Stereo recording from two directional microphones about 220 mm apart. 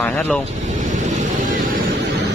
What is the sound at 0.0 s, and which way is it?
Speech, 10° left (ahead or behind).